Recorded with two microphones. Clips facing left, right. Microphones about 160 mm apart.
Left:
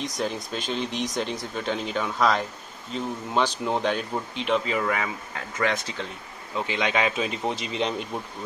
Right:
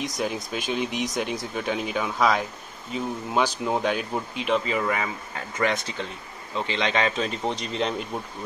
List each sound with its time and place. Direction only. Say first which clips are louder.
0.0 s speech: right 1 dB; 10° right (ahead or behind)
6.5 s speech: even; 10° left (ahead or behind)